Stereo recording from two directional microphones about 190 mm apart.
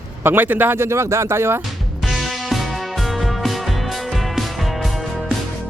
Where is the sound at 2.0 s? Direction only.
Centre (ahead or behind).